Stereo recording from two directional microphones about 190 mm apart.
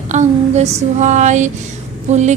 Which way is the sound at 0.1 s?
35° right (ahead or behind).